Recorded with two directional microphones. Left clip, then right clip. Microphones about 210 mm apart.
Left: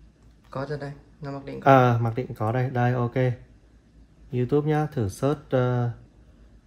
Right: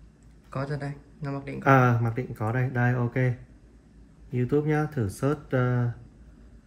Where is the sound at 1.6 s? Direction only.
50° left (ahead or behind).